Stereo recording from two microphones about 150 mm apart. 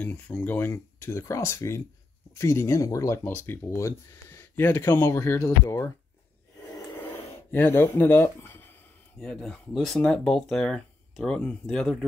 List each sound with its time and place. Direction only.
0.0 s speech: 10° left (ahead or behind)
7.0 s a sound: 15° left (ahead or behind)
9.2 s speech: 5° left (ahead or behind)